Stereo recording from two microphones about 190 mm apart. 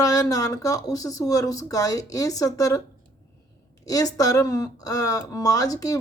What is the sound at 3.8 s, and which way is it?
Speech, 20° left (ahead or behind).